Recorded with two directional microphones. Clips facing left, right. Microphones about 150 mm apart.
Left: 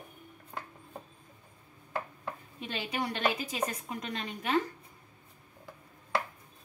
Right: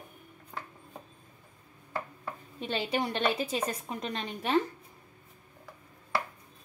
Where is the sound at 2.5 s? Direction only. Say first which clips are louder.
Right 5 dB; 30° right (ahead or behind).